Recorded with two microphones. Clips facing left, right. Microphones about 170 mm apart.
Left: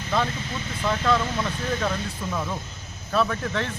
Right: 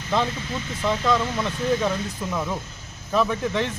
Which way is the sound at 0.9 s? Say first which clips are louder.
Right 1 dB; 15° right (ahead or behind).